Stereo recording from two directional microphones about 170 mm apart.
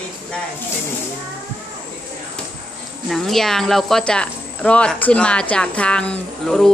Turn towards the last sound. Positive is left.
turn(degrees=0)  # may be behind; listen again after turning